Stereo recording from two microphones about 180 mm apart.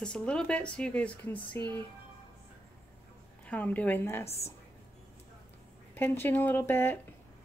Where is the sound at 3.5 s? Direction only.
10° left (ahead or behind).